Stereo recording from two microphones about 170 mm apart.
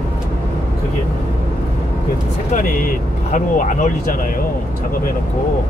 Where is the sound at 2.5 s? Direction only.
50° left (ahead or behind).